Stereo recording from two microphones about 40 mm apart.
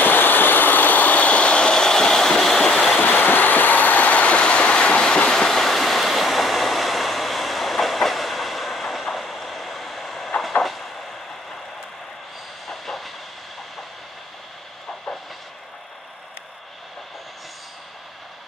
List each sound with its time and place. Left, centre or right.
0.0 s train: left; by 2.9 s centre
3.0 s vehicle: left
5.0 s train: centre
12.6 s train: centre